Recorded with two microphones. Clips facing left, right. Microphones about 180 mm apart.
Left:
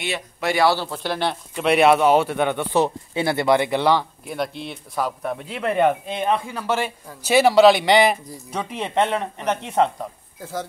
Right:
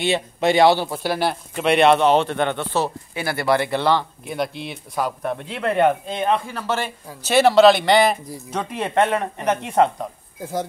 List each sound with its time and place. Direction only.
0.0 s speech: 25° right (ahead or behind); by 1.4 s 5° right (ahead or behind)
1.6 s speech: 5° left (ahead or behind)
4.3 s speech: centre (ahead or behind)
8.5 s speech: centre (ahead or behind)